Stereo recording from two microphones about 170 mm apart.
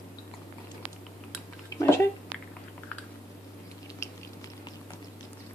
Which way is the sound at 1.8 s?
15° left (ahead or behind).